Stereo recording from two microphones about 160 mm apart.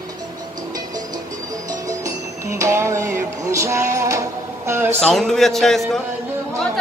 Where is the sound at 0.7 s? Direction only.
25° right (ahead or behind).